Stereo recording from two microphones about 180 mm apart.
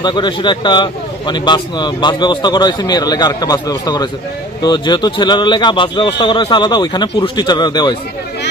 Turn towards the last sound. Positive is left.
turn(degrees=25)  # may be behind; listen again after turning